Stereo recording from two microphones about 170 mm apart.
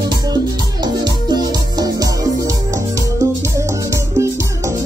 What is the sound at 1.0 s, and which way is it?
Music, 25° right (ahead or behind).